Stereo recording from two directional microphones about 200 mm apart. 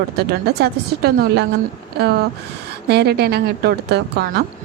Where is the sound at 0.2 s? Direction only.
50° right (ahead or behind).